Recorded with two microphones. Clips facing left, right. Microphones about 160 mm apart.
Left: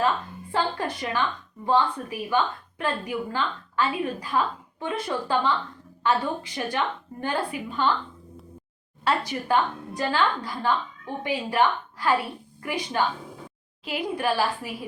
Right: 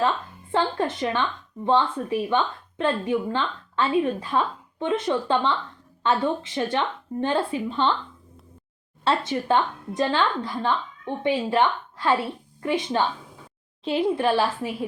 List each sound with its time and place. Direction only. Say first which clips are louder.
0.5 s a woman's voice: right 3 dB; 25° right (ahead or behind)
9.0 s a woman's voice: right 2 dB; 25° right (ahead or behind)